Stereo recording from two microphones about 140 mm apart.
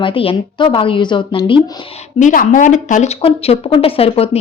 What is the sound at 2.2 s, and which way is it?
Speech, 65° left (ahead or behind).